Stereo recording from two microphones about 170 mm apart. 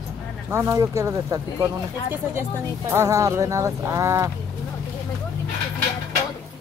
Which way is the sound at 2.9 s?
15° right (ahead or behind).